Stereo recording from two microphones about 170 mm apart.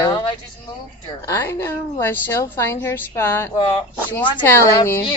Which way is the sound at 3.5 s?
30° left (ahead or behind).